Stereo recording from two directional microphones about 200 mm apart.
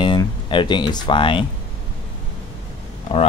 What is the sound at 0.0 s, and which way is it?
Speech, 25° left (ahead or behind).